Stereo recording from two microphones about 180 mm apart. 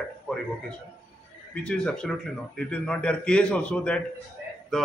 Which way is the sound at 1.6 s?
5° left (ahead or behind).